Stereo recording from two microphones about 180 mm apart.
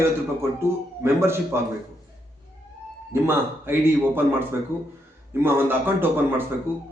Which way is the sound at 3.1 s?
10° right (ahead or behind).